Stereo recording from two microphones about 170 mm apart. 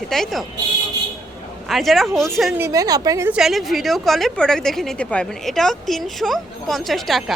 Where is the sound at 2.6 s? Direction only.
20° right (ahead or behind).